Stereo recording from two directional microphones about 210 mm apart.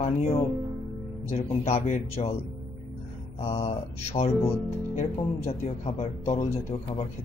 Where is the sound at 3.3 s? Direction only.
30° left (ahead or behind).